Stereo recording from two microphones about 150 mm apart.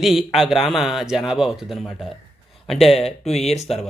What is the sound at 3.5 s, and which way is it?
Speech, 45° left (ahead or behind).